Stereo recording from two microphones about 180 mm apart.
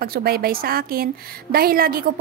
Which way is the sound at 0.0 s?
60° right (ahead or behind).